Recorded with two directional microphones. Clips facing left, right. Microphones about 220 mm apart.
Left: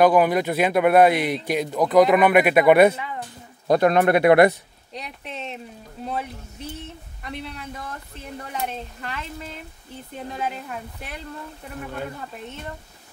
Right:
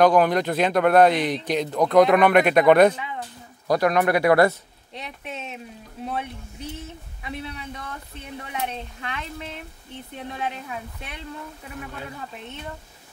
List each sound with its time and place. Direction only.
0.0 s speech: 5° left (ahead or behind)
3.6 s speech: 25° left (ahead or behind)
4.9 s speech: centre (ahead or behind)